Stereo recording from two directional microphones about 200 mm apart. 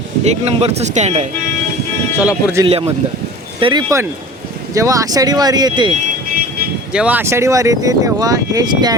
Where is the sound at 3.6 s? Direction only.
20° right (ahead or behind).